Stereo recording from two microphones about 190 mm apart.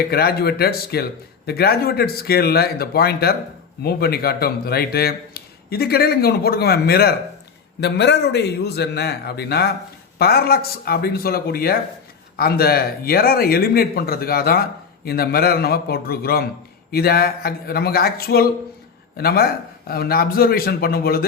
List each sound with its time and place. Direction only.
0.0 s speech: 55° left (ahead or behind)